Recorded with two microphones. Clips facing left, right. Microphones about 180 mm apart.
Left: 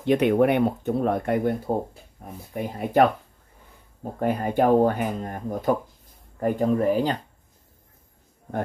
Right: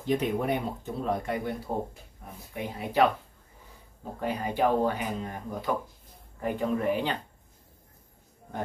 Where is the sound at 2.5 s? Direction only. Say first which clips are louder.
Left 6 dB; 45° left (ahead or behind).